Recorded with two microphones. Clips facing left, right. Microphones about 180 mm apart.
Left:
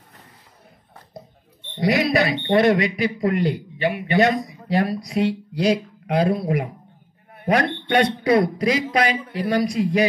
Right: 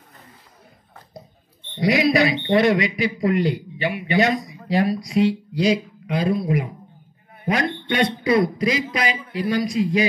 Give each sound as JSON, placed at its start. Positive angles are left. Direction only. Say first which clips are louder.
{"t": 1.9, "sound": "a man's voice", "louder": "right 1 dB", "side_deg": 50}
{"t": 7.4, "sound": "a man's voice", "louder": "left 2 dB", "side_deg": 55}